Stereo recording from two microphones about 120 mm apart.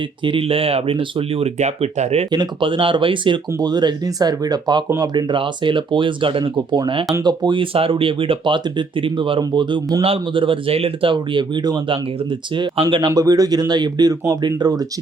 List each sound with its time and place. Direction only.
0.3 s speech: 50° right (ahead or behind)
2.3 s speech: 40° right (ahead or behind)
5.1 s speech: 45° right (ahead or behind)
13.1 s speech: 30° right (ahead or behind)